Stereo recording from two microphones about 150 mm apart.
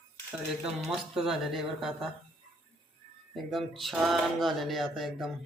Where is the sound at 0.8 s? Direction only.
5° right (ahead or behind).